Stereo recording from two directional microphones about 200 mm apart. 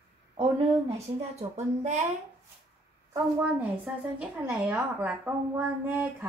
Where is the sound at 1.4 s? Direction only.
35° right (ahead or behind).